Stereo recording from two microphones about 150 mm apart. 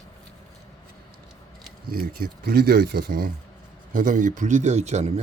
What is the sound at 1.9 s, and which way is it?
Speech, 90° right.